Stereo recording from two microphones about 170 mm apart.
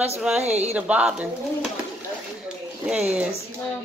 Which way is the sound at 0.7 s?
5° right (ahead or behind).